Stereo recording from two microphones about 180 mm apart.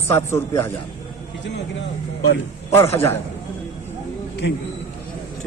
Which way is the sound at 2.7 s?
15° left (ahead or behind).